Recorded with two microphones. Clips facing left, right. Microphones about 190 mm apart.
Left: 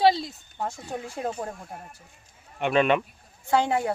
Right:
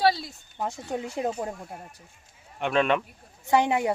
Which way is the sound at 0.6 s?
20° right (ahead or behind).